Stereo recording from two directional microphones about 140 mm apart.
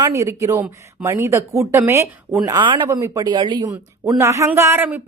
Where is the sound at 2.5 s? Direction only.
35° right (ahead or behind).